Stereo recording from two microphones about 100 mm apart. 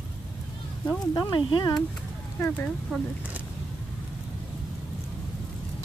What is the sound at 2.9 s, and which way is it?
Speech, 5° left (ahead or behind).